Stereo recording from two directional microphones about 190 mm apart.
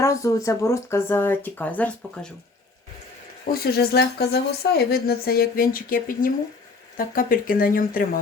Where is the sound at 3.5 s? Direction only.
55° left (ahead or behind).